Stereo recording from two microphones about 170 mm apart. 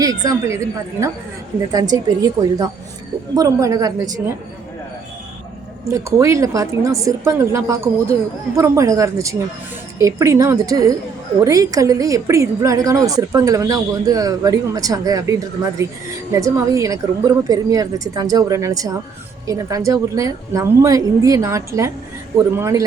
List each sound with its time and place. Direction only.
0.0 s a woman's voice: 20° right (ahead or behind)
5.9 s a woman's voice: 20° right (ahead or behind)